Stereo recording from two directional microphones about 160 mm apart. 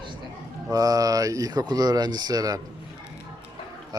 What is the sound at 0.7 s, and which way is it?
Speech, 20° right (ahead or behind).